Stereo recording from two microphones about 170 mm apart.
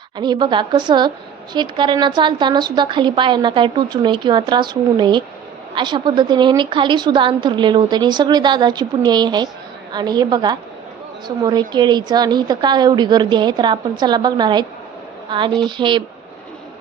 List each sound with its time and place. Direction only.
0.2 s a woman's voice: 25° right (ahead or behind)